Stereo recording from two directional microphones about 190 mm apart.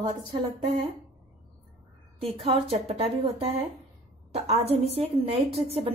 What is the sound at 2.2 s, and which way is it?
A woman's voice, 30° right (ahead or behind).